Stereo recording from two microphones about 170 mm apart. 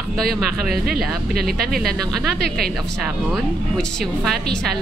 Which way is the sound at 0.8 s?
65° right (ahead or behind).